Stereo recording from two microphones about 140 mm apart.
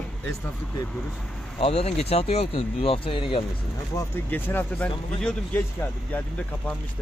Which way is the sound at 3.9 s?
30° left (ahead or behind).